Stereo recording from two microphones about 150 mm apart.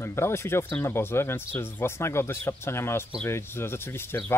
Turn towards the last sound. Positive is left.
turn(degrees=15)  # may be behind; listen again after turning